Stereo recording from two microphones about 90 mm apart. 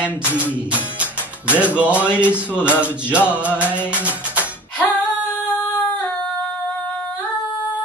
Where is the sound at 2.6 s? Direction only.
20° left (ahead or behind).